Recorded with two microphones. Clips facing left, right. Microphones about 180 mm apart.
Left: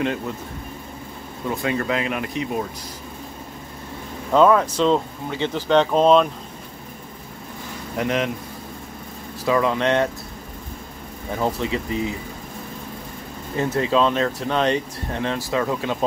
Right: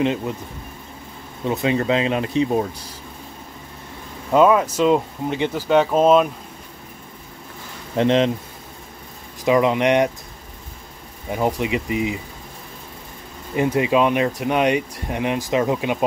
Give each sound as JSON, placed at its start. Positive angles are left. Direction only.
{"t": 1.5, "sound": "speech", "side_deg": -20}
{"t": 4.3, "sound": "speech", "side_deg": -10}
{"t": 7.9, "sound": "speech", "side_deg": -25}
{"t": 9.4, "sound": "speech", "side_deg": -20}
{"t": 11.3, "sound": "speech", "side_deg": -15}
{"t": 13.6, "sound": "speech", "side_deg": -15}